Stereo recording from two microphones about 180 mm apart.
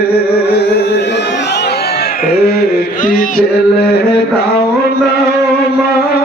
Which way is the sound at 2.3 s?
60° left (ahead or behind).